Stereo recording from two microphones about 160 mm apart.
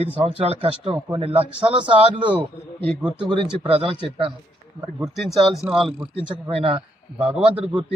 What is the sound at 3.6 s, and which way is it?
Speech, 35° right (ahead or behind).